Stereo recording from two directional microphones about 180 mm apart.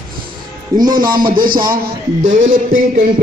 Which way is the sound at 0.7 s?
20° right (ahead or behind).